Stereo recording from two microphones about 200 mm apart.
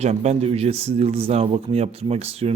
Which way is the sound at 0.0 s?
35° right (ahead or behind).